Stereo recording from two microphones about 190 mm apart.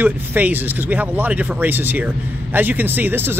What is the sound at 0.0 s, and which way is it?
Speech, 10° right (ahead or behind).